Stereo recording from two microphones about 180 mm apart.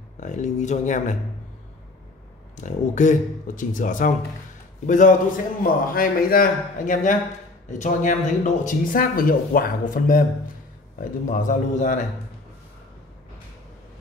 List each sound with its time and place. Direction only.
0.2 s speech: 40° left (ahead or behind)
2.5 s speech: 45° left (ahead or behind)
11.2 s speech: 45° left (ahead or behind)